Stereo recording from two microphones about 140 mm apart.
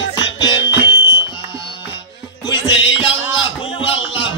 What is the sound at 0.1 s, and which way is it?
Music, 30° left (ahead or behind).